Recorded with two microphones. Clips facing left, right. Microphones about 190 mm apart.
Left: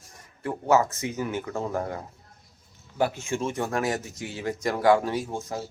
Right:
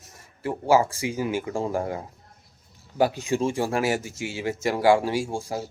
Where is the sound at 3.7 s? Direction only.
10° right (ahead or behind).